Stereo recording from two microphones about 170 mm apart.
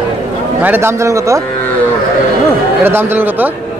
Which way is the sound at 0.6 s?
10° right (ahead or behind).